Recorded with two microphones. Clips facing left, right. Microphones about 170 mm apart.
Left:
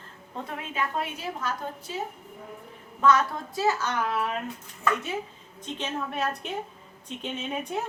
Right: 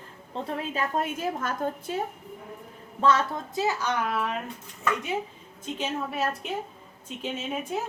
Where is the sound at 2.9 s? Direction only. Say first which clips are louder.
Left 1 dB; 30° right (ahead or behind).